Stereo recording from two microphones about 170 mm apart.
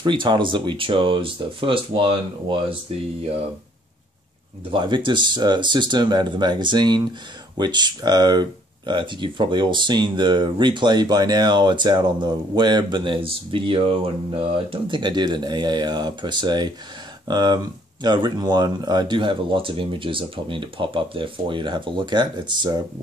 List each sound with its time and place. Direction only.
0.0 s speech: 25° right (ahead or behind)
4.6 s speech: 30° right (ahead or behind)